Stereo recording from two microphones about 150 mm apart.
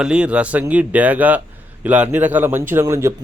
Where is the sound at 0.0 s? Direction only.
5° right (ahead or behind).